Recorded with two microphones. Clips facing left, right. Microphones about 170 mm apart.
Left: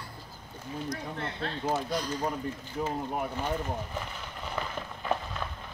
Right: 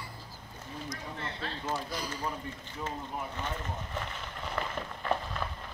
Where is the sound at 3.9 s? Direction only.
Centre (ahead or behind).